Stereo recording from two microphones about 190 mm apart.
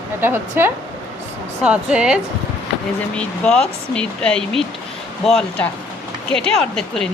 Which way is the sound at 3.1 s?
5° left (ahead or behind).